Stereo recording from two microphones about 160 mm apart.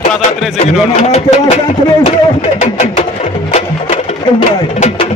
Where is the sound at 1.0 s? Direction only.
45° left (ahead or behind).